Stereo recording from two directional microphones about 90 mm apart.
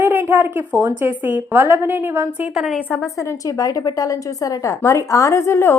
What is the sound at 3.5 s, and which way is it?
A woman's voice, 40° left (ahead or behind).